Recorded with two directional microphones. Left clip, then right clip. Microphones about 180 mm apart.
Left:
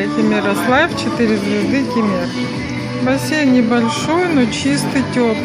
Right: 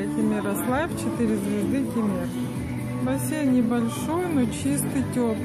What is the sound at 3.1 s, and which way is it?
Speech, centre (ahead or behind).